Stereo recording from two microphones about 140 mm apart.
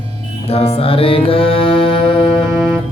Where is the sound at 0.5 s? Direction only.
45° left (ahead or behind).